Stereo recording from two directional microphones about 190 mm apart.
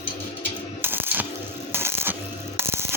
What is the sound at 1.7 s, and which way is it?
Coin, 10° right (ahead or behind).